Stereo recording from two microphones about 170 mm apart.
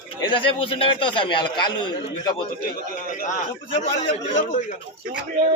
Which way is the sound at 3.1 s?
50° left (ahead or behind).